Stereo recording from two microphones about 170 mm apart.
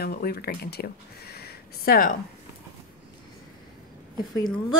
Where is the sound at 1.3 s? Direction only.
65° left (ahead or behind).